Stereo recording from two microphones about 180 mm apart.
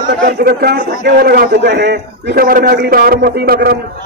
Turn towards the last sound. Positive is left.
turn(degrees=-60)  # may be behind; listen again after turning